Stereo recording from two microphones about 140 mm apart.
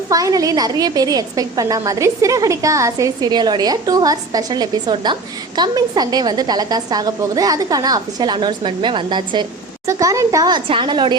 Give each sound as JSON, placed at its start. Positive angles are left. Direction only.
{"t": 0.1, "sound": "a woman's voice", "side_deg": -25}
{"t": 9.8, "sound": "a woman's voice", "side_deg": -20}